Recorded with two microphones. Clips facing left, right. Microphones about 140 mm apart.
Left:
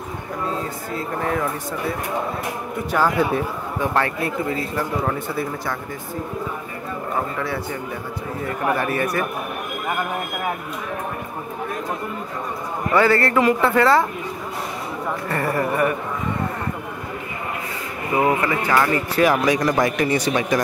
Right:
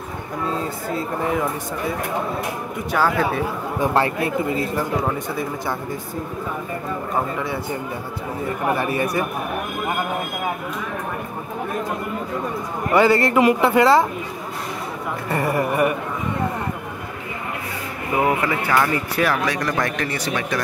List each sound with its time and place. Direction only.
1.2 s speech: 10° right (ahead or behind)
3.8 s speech: 30° right (ahead or behind)
8.6 s speech: 15° right (ahead or behind)
12.9 s speech: 15° right (ahead or behind)
15.2 s speech: 10° right (ahead or behind)
18.1 s speech: 5° right (ahead or behind)
19.4 s speech: 15° left (ahead or behind)